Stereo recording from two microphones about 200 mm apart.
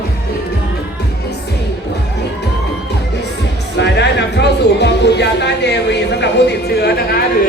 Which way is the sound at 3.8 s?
60° left (ahead or behind).